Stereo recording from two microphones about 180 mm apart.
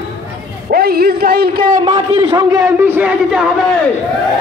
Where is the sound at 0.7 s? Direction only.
60° right (ahead or behind).